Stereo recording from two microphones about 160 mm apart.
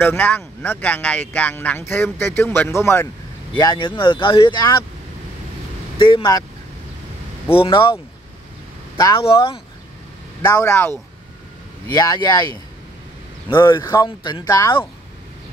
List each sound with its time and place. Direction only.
0.0 s speech: 10° left (ahead or behind)
3.5 s speech: 30° left (ahead or behind)
5.9 s speech: 35° left (ahead or behind)
7.4 s speech: 35° left (ahead or behind)
8.9 s speech: 20° left (ahead or behind)
9.2 s speech: 35° left (ahead or behind)
10.4 s speech: 15° left (ahead or behind)
11.9 s speech: 25° left (ahead or behind)
13.6 s speech: 25° left (ahead or behind)